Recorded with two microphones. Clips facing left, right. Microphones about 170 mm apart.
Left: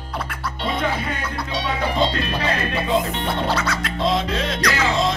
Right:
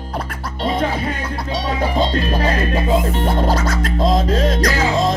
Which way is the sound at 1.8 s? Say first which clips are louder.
Right 3 dB; 40° right (ahead or behind).